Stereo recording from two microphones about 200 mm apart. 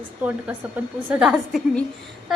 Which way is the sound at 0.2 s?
5° right (ahead or behind).